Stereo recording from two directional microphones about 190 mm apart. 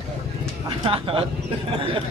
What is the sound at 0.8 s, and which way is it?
Speech, 25° right (ahead or behind).